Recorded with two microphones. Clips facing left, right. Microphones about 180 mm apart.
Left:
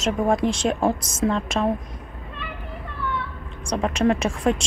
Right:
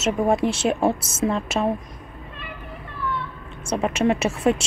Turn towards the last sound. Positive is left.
turn(degrees=-5)  # may be behind; listen again after turning